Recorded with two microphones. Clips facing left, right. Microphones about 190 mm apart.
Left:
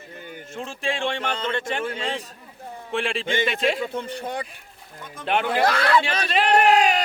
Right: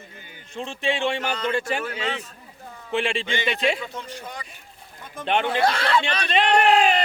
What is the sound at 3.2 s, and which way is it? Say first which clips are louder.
Speech: left 4 dB; 50° left (ahead or behind).